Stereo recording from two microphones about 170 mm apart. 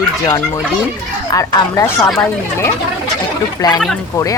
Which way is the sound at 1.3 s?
20° left (ahead or behind).